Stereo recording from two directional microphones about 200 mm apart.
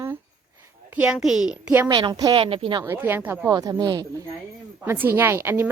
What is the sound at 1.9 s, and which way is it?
Speech, 20° right (ahead or behind).